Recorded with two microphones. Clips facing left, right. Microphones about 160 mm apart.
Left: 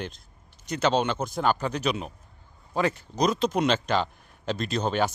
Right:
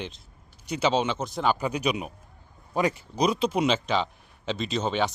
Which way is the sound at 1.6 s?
10° right (ahead or behind).